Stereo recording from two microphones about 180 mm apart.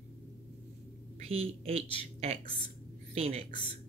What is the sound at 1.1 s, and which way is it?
Speech, 35° right (ahead or behind).